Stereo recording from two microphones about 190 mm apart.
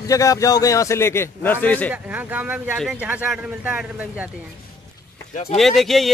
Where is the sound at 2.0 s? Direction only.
10° right (ahead or behind).